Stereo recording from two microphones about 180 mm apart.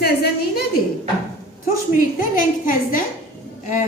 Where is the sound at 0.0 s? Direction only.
60° left (ahead or behind).